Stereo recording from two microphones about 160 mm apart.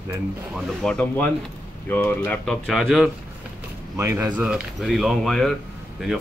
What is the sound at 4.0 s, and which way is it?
Speech, 15° right (ahead or behind).